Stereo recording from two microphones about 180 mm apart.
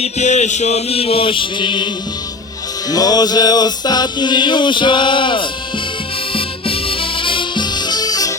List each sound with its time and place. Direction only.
0.0 s chant: 40° left (ahead or behind)
2.9 s music: 20° left (ahead or behind)
6.3 s harmonica: 30° left (ahead or behind)